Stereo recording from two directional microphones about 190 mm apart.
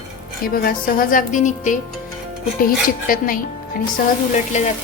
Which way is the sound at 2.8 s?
45° left (ahead or behind).